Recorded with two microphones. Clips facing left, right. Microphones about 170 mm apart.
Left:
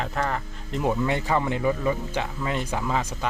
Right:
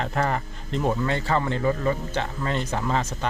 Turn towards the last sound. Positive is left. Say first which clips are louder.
# right 1 dB
turn(degrees=10)  # may be behind; listen again after turning